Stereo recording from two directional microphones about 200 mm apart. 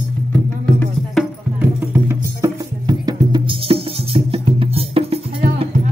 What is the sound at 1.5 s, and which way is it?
Music, 10° right (ahead or behind).